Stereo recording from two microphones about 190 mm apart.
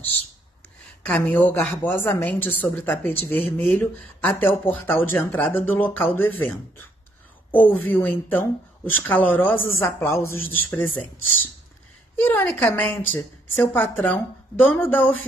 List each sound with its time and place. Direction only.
1.0 s a woman's voice: 5° left (ahead or behind)
12.2 s a woman's voice: 10° left (ahead or behind)